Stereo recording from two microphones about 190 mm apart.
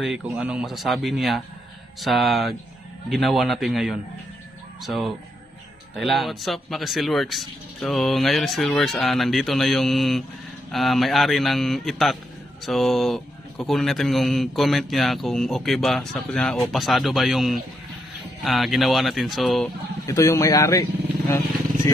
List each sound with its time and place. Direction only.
0.0 s speech: 5° right (ahead or behind)
20.1 s speech: 15° left (ahead or behind)